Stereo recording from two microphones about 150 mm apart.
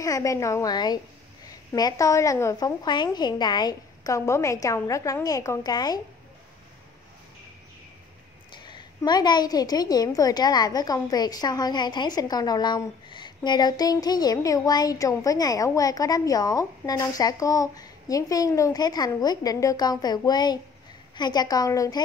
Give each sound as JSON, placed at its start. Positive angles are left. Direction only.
{"t": 0.0, "sound": "a woman's voice", "side_deg": 20}
{"t": 8.6, "sound": "a woman's voice", "side_deg": 30}